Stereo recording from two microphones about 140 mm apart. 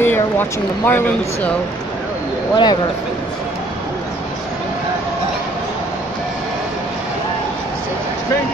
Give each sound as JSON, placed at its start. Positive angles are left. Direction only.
{"t": 0.0, "sound": "speech", "side_deg": 15}
{"t": 2.5, "sound": "speech", "side_deg": 30}